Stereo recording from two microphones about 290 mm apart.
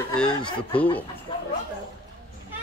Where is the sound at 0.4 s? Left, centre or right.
Centre.